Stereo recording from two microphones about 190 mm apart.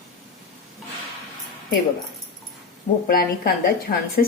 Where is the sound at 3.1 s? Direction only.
50° left (ahead or behind).